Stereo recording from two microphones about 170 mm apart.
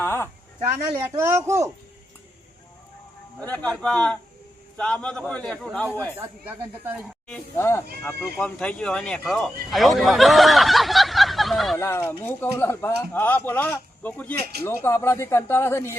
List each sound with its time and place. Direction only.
0.0 s a sound: 15° left (ahead or behind)
1.2 s speech: 15° right (ahead or behind)
3.4 s speech: 10° left (ahead or behind)
6.1 s speech: 10° right (ahead or behind)
7.3 s speech: 10° left (ahead or behind)
11.8 s speech: 15° left (ahead or behind)